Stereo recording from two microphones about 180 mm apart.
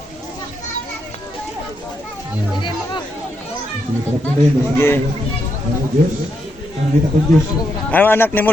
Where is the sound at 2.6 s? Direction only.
25° left (ahead or behind).